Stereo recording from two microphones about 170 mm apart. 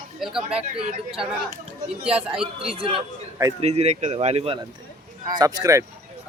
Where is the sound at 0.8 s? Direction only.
35° right (ahead or behind).